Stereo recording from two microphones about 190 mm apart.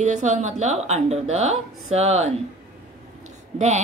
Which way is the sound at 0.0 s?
40° right (ahead or behind).